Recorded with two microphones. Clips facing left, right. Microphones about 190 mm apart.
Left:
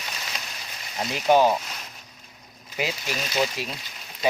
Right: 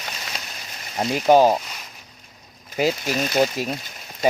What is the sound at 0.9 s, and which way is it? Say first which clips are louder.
Speech: right 4 dB; 45° right (ahead or behind).